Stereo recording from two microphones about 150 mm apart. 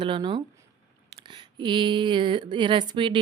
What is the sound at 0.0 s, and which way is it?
Speech, 30° right (ahead or behind).